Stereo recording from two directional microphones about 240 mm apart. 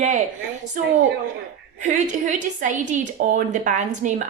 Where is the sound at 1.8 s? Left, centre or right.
Right.